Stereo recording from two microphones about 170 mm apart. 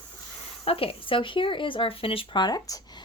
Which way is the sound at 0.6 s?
35° left (ahead or behind).